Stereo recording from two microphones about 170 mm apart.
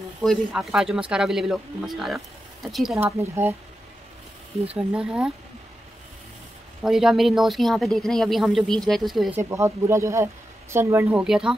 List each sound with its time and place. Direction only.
0.2 s speech: centre (ahead or behind)
3.0 s speech: 15° right (ahead or behind)
4.7 s speech: 5° right (ahead or behind)
6.8 s speech: 5° right (ahead or behind)
9.3 s speech: 15° right (ahead or behind)